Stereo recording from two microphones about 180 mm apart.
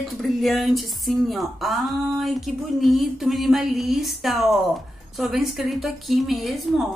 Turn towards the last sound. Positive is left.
turn(degrees=0)  # may be behind; listen again after turning